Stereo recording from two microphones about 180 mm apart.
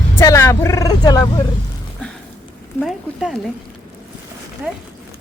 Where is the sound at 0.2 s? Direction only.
15° left (ahead or behind).